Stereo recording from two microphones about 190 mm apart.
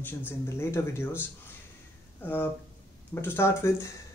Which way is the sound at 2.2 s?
10° left (ahead or behind).